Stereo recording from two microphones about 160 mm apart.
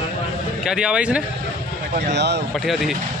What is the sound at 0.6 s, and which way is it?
Speech, 5° right (ahead or behind).